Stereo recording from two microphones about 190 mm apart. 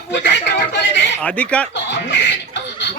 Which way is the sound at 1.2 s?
5° left (ahead or behind).